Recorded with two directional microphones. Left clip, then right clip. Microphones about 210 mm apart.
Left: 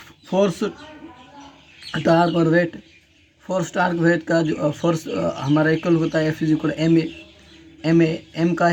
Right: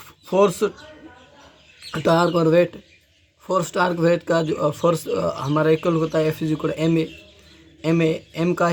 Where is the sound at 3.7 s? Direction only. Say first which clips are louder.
Left 1 dB; 25° right (ahead or behind).